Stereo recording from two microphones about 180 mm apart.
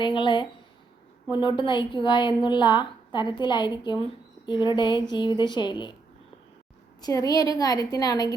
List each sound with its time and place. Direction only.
0.0 s a woman's voice: 25° left (ahead or behind)
7.0 s a woman's voice: 20° left (ahead or behind)